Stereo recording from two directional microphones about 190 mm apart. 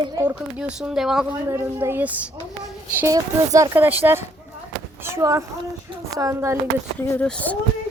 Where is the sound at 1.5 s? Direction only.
15° right (ahead or behind).